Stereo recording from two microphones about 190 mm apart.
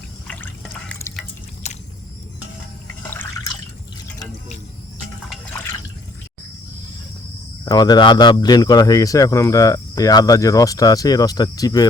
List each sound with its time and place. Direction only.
0.3 s drip: 5° left (ahead or behind)
1.6 s a sound: 35° left (ahead or behind)
7.6 s speech: 20° left (ahead or behind)